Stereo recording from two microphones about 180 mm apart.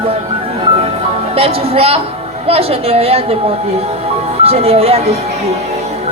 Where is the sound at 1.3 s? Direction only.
35° right (ahead or behind).